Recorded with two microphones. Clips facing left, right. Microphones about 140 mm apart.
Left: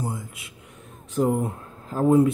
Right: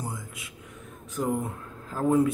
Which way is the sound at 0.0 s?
30° left (ahead or behind).